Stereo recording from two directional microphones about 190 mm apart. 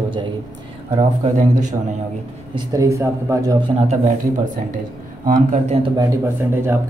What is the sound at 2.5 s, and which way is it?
Speech, 15° right (ahead or behind).